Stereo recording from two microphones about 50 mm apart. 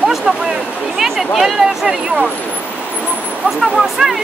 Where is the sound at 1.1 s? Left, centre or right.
Centre.